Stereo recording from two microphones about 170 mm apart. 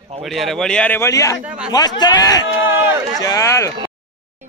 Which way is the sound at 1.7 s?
25° left (ahead or behind).